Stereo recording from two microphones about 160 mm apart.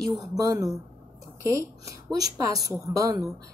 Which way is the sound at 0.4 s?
20° right (ahead or behind).